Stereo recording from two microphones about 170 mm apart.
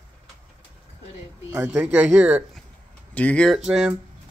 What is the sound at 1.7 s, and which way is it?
Speech, 5° right (ahead or behind).